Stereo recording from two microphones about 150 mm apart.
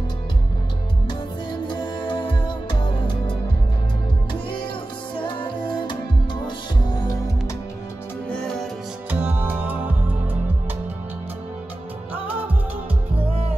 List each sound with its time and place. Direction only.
1.0 s music: 30° left (ahead or behind)
8.3 s music: 5° left (ahead or behind)
9.1 s music: 10° right (ahead or behind)